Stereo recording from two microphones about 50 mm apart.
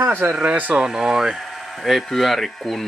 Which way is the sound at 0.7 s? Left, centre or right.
Centre.